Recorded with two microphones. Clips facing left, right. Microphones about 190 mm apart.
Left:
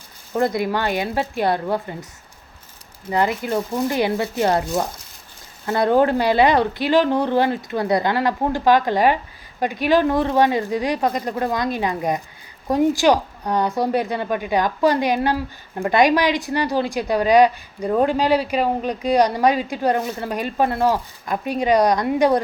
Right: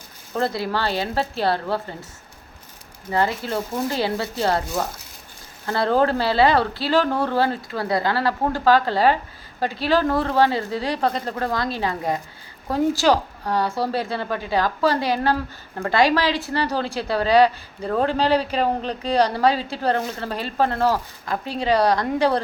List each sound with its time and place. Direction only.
0.3 s a woman's voice: 15° left (ahead or behind)
3.1 s a woman's voice: 15° left (ahead or behind)